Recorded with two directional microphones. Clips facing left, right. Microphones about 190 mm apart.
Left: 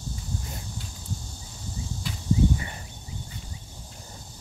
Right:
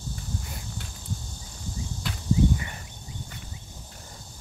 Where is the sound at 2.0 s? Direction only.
65° right (ahead or behind).